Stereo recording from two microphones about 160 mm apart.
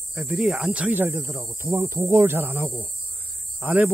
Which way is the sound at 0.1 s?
5° right (ahead or behind).